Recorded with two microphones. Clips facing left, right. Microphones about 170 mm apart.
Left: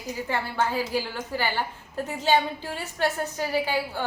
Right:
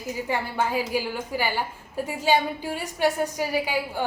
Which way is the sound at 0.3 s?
15° right (ahead or behind).